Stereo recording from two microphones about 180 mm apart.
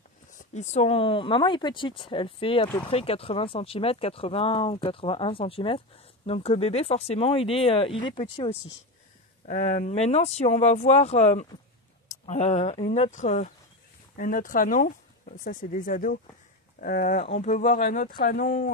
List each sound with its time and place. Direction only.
0.3 s speech: 40° left (ahead or behind)
9.5 s speech: 40° left (ahead or behind)
17.2 s speech: 40° left (ahead or behind)